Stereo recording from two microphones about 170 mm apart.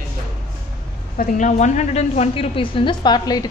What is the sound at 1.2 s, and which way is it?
A woman's voice, 45° left (ahead or behind).